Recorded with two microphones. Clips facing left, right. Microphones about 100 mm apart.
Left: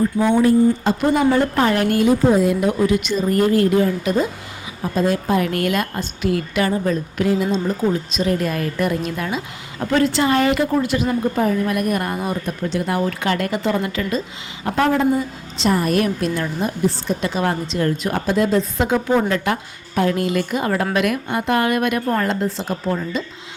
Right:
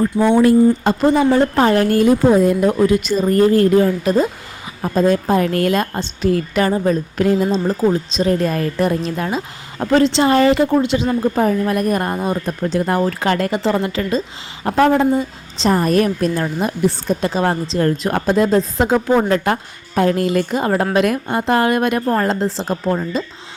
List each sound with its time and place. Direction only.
0.3 s speech: 60° right (ahead or behind)
1.0 s a woman's voice: 25° right (ahead or behind)
2.3 s a woman's voice: 45° right (ahead or behind); by 12.5 s 30° right (ahead or behind)
12.7 s a woman's voice: 40° right (ahead or behind)